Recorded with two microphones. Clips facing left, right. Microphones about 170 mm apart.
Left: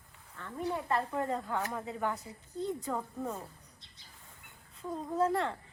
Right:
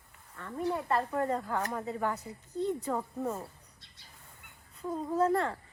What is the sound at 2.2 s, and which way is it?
Speech, 35° right (ahead or behind).